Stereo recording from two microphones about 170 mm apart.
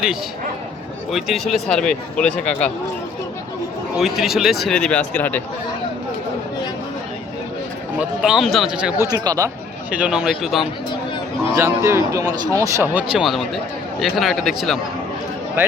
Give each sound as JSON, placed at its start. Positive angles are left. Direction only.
{"t": 1.1, "sound": "speech", "side_deg": 0}
{"t": 3.9, "sound": "speech", "side_deg": 0}
{"t": 7.9, "sound": "speech", "side_deg": -5}
{"t": 9.0, "sound": "speech", "side_deg": -20}
{"t": 9.9, "sound": "speech", "side_deg": -5}
{"t": 11.5, "sound": "a man's voice", "side_deg": -15}